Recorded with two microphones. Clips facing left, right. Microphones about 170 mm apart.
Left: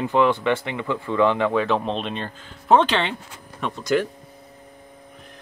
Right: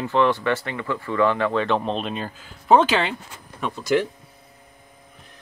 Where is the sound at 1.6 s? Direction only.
Centre (ahead or behind).